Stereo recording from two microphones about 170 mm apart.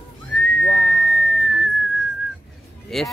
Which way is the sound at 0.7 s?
90° left.